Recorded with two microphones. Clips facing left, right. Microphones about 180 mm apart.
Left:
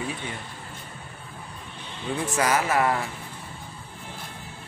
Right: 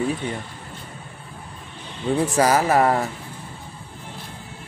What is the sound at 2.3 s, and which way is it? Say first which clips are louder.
Speech: right 4 dB; 35° right (ahead or behind).